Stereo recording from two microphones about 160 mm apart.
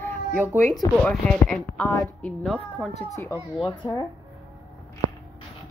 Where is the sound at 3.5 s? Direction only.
30° left (ahead or behind).